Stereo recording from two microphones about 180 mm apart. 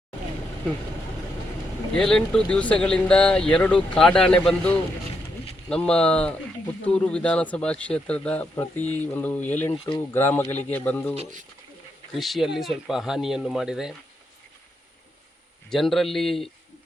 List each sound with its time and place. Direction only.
1.9 s speech: 5° left (ahead or behind)
11.1 s speech: 35° right (ahead or behind)
12.1 s speech: centre (ahead or behind)
15.7 s speech: centre (ahead or behind)